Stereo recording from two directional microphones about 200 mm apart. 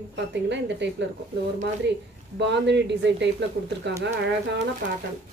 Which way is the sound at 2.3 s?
60° right (ahead or behind).